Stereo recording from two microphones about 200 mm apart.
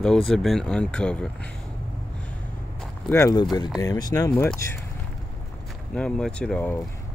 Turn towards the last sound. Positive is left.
turn(degrees=5)  # may be behind; listen again after turning